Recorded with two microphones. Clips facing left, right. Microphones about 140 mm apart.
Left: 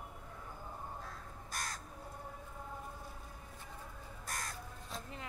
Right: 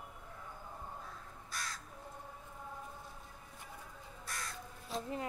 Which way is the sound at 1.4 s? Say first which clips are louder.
Left 1 dB; 45° left (ahead or behind).